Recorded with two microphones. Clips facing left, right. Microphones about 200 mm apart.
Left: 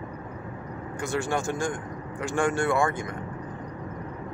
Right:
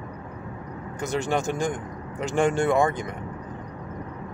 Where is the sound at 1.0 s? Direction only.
20° right (ahead or behind).